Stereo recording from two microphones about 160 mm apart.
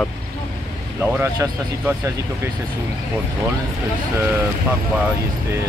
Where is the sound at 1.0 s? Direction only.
15° right (ahead or behind).